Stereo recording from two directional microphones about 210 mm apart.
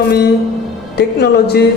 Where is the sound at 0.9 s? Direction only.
50° left (ahead or behind).